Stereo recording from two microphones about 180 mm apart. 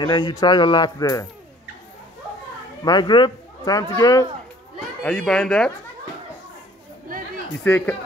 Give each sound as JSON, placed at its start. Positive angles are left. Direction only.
{"t": 0.0, "sound": "speech", "side_deg": 25}
{"t": 2.8, "sound": "a man's voice", "side_deg": 25}
{"t": 5.0, "sound": "speech", "side_deg": 5}
{"t": 7.1, "sound": "chatter", "side_deg": -50}
{"t": 7.6, "sound": "speech", "side_deg": 10}